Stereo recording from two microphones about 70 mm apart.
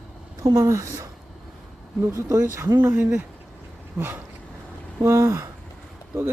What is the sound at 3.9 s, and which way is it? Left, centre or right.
Speech, right.